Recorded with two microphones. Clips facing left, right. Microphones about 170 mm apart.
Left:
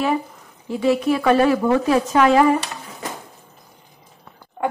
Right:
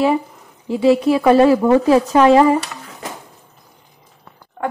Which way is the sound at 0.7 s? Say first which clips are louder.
Right 5 dB; 30° right (ahead or behind).